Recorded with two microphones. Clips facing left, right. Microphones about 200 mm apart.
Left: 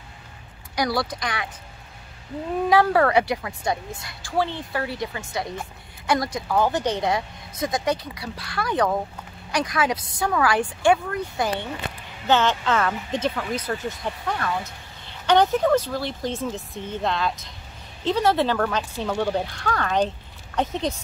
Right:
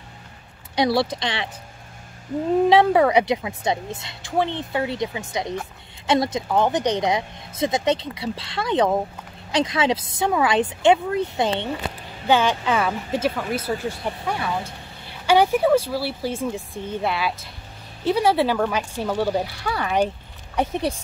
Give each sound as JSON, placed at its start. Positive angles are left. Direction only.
{"t": 0.7, "sound": "a woman's voice", "side_deg": -25}
{"t": 2.7, "sound": "a woman's voice", "side_deg": -20}
{"t": 12.3, "sound": "speech", "side_deg": -10}